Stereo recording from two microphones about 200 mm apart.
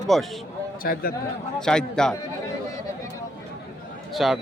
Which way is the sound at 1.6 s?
5° left (ahead or behind).